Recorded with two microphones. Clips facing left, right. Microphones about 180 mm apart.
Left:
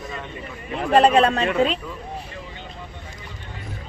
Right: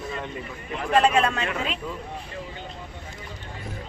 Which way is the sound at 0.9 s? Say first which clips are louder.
Left 5 dB; 35° left (ahead or behind).